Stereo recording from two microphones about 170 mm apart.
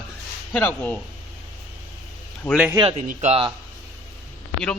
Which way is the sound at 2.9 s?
40° right (ahead or behind).